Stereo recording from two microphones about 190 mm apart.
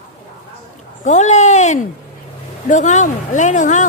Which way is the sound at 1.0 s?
40° left (ahead or behind).